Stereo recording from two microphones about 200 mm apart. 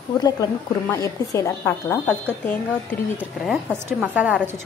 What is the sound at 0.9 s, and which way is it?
A woman's voice, 15° left (ahead or behind).